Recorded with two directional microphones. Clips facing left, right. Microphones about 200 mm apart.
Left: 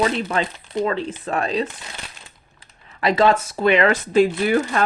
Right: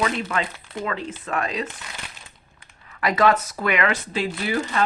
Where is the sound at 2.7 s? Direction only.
25° left (ahead or behind).